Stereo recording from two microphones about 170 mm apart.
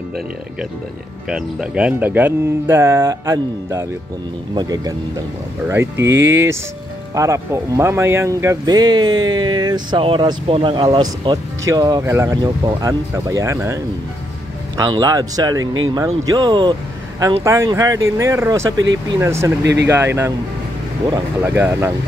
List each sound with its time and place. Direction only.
1.3 s speech: 5° right (ahead or behind)
14.9 s speech: 20° right (ahead or behind)
17.4 s speech: 15° right (ahead or behind)
19.6 s speech: 90° right
19.9 s speech: 15° right (ahead or behind)
21.4 s speech: 10° right (ahead or behind)